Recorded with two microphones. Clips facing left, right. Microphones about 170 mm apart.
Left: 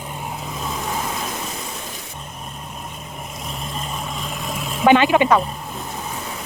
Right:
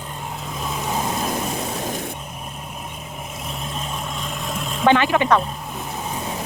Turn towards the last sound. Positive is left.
turn(degrees=15)  # may be behind; listen again after turning